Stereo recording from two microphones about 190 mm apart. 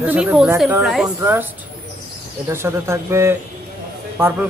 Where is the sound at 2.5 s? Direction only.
15° right (ahead or behind).